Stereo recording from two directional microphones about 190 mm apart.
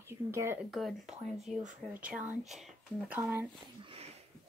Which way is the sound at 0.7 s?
Centre (ahead or behind).